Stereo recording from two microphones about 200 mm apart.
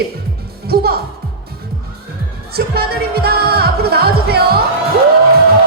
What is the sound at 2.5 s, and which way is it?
Speech, 50° right (ahead or behind).